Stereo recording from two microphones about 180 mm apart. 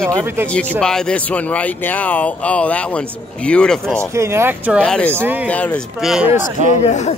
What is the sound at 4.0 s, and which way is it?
Speech, 15° right (ahead or behind).